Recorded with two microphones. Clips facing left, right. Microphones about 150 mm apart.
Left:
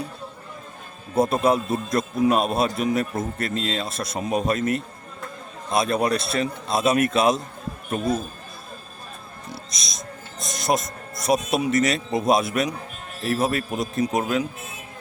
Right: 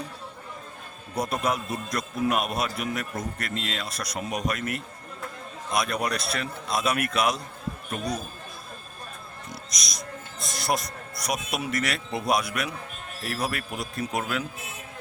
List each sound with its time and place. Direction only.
1.1 s a man's voice: 25° left (ahead or behind)
9.6 s a man's voice: 25° left (ahead or behind)